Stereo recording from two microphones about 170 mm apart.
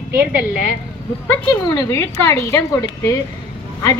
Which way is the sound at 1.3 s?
15° left (ahead or behind).